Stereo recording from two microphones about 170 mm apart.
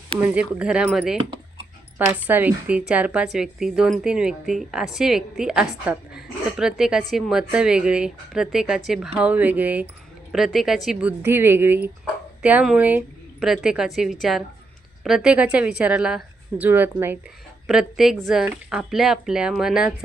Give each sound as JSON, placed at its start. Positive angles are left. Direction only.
{"t": 0.2, "sound": "a woman's voice", "side_deg": -10}
{"t": 11.2, "sound": "a woman's voice", "side_deg": -15}